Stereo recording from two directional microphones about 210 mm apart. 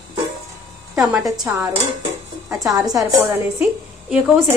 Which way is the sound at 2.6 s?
15° right (ahead or behind).